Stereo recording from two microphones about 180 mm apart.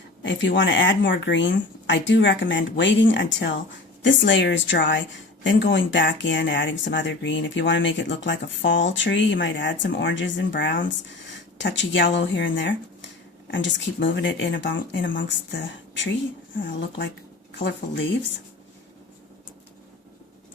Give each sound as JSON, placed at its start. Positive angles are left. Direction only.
{"t": 0.2, "sound": "a woman's voice", "side_deg": 85}
{"t": 17.6, "sound": "a woman's voice", "side_deg": 80}